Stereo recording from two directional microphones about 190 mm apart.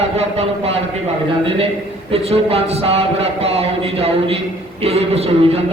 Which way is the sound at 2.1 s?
30° right (ahead or behind).